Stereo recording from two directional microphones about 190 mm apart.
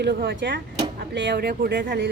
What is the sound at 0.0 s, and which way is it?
Speech, 65° right (ahead or behind).